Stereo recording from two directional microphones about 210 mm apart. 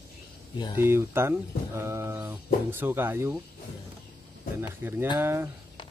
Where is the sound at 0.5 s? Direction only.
20° left (ahead or behind).